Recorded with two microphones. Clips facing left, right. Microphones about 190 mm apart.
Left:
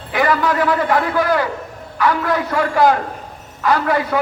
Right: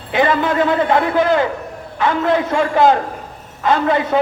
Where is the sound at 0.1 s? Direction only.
25° right (ahead or behind).